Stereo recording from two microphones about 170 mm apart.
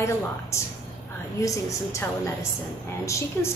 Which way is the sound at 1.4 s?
20° left (ahead or behind).